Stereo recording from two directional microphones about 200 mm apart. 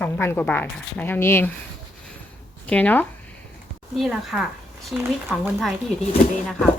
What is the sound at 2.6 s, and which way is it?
A woman's voice, 5° left (ahead or behind).